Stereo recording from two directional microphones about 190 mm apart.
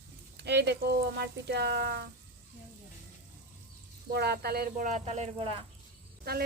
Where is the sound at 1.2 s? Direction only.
60° right (ahead or behind).